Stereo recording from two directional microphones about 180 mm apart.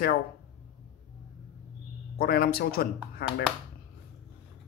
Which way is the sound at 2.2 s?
55° left (ahead or behind).